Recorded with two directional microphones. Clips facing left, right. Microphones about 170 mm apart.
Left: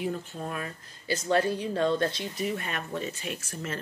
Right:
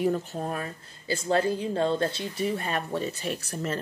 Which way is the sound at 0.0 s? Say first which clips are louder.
Right 6 dB; 40° right (ahead or behind).